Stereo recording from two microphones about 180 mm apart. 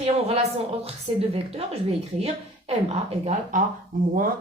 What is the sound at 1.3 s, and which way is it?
Speech, 35° right (ahead or behind).